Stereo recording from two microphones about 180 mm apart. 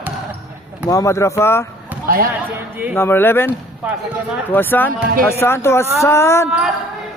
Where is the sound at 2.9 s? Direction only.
10° left (ahead or behind).